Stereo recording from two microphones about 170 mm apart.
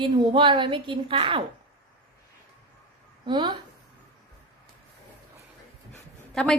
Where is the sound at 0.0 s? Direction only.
30° right (ahead or behind).